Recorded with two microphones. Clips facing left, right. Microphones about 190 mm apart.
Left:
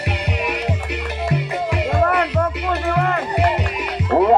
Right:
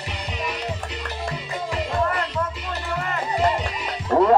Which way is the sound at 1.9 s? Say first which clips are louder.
Left 6 dB; 65° left (ahead or behind).